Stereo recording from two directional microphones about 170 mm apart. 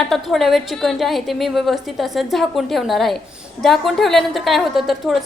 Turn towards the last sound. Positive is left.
turn(degrees=0)  # may be behind; listen again after turning